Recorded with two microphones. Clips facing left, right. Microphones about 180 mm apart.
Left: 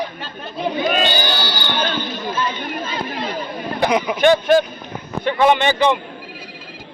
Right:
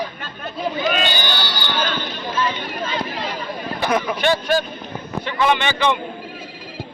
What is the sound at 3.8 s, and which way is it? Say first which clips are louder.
Speech: left 3 dB; 15° left (ahead or behind).